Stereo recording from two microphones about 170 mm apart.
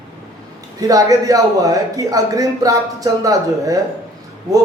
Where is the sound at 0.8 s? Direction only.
20° right (ahead or behind).